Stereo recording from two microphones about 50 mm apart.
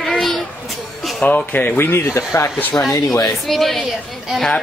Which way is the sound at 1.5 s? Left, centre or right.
Left.